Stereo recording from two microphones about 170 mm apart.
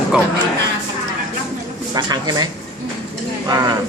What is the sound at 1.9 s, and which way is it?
Speech, 25° right (ahead or behind).